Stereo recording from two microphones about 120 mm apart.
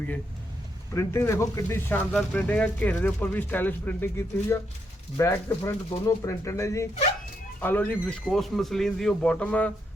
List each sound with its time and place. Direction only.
0.9 s speech: 20° left (ahead or behind)
2.1 s speech: 10° left (ahead or behind)
8.3 s speech: centre (ahead or behind)